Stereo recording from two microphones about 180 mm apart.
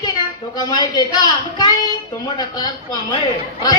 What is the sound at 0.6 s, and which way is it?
A woman's voice, 25° left (ahead or behind).